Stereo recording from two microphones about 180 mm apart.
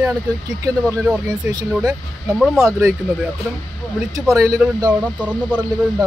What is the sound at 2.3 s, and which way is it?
Speech, 5° right (ahead or behind).